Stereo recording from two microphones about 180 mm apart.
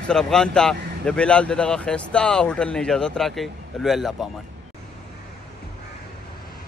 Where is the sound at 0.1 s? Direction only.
5° left (ahead or behind).